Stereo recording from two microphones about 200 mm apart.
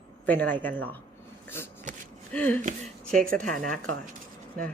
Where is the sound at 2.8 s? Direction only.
5° left (ahead or behind).